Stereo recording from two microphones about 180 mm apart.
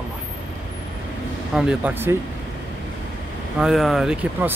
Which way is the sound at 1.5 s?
5° right (ahead or behind).